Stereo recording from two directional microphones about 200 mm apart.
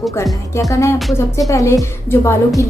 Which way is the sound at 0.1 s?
15° left (ahead or behind).